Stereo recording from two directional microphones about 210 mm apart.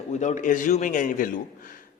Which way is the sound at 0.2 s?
35° left (ahead or behind).